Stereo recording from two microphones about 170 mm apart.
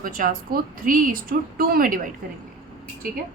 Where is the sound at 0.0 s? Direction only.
55° right (ahead or behind).